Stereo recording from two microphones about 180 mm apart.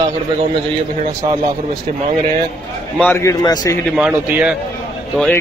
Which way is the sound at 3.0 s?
15° left (ahead or behind).